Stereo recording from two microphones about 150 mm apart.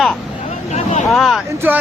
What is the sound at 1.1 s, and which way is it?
Speech, centre (ahead or behind).